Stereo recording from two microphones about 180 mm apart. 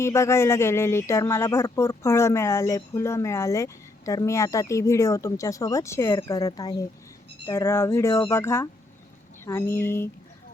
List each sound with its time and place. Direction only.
0.0 s speech: 15° left (ahead or behind)